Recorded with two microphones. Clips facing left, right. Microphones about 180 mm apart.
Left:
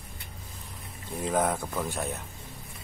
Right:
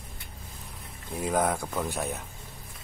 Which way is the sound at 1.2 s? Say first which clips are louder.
Even; centre (ahead or behind).